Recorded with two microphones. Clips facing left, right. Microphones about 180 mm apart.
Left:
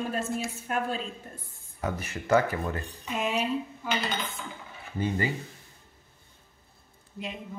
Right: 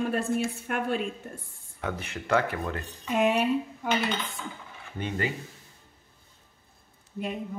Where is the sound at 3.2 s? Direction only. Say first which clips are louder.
Right 5 dB; 60° right (ahead or behind).